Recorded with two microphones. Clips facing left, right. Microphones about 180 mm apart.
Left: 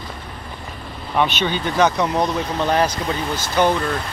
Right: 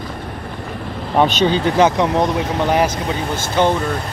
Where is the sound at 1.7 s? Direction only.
25° right (ahead or behind).